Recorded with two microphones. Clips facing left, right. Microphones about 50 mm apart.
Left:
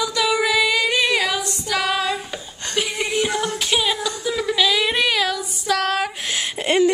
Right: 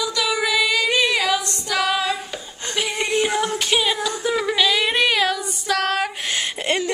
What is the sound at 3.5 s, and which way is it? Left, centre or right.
Music, centre.